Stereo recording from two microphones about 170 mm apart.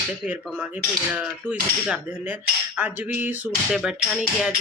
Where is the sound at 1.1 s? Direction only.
5° right (ahead or behind).